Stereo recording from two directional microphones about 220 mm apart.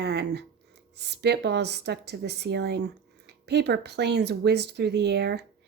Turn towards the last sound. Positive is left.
turn(degrees=-50)  # may be behind; listen again after turning